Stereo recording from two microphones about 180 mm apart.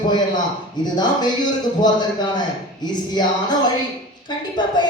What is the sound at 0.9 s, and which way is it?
A woman's voice, 25° left (ahead or behind).